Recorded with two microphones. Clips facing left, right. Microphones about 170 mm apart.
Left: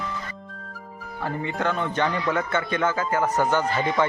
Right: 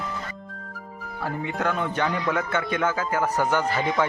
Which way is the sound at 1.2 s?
5° right (ahead or behind).